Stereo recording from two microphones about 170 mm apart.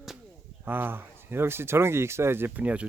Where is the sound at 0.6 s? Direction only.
10° right (ahead or behind).